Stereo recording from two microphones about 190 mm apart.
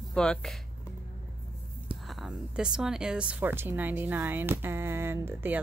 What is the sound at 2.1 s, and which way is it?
Speech, centre (ahead or behind).